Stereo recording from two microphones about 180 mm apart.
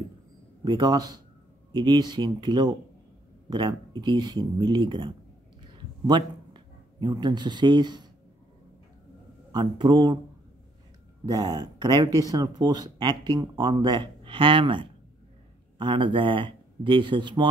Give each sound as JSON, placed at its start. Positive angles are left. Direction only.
{"t": 0.7, "sound": "speech", "side_deg": -25}
{"t": 5.6, "sound": "a sound", "side_deg": -25}
{"t": 9.5, "sound": "speech", "side_deg": -25}
{"t": 11.2, "sound": "speech", "side_deg": -20}